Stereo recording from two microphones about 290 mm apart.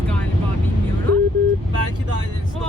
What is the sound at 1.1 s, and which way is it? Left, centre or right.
Vehicle, right.